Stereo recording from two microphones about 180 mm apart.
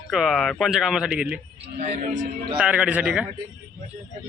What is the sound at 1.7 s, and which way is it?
Speech, 40° right (ahead or behind).